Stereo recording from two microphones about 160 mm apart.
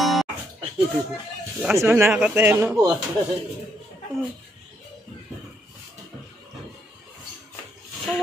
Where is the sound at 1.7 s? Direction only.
15° right (ahead or behind).